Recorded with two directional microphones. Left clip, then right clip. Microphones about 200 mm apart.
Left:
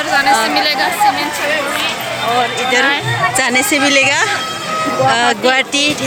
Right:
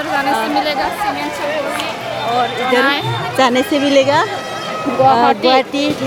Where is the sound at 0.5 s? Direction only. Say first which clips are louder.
Left 2 dB; 25° right (ahead or behind).